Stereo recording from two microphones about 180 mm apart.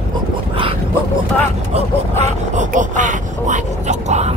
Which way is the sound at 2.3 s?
45° right (ahead or behind).